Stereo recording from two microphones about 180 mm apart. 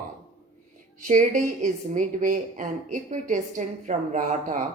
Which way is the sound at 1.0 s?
45° right (ahead or behind).